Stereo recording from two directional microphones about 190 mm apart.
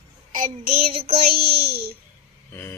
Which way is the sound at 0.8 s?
30° right (ahead or behind).